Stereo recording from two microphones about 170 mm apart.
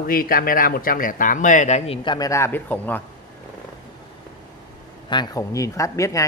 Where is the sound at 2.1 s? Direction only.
20° left (ahead or behind).